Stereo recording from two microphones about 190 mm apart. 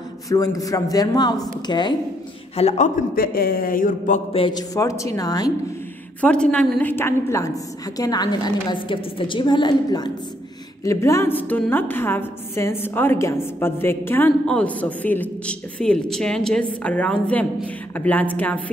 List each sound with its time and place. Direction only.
0.6 s a woman's voice: 20° left (ahead or behind)
3.2 s speech: 50° left (ahead or behind)
4.3 s a woman's voice: 25° left (ahead or behind)
6.2 s a woman's voice: 5° left (ahead or behind)